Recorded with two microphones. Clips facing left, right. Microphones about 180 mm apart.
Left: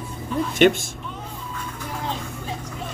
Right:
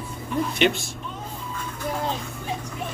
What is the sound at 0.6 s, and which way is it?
Speech, 50° left (ahead or behind).